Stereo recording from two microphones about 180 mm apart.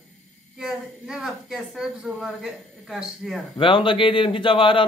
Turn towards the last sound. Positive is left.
turn(degrees=30)  # may be behind; listen again after turning